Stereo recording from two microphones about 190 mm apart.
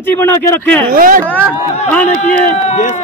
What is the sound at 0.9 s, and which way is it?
Speech, 45° right (ahead or behind).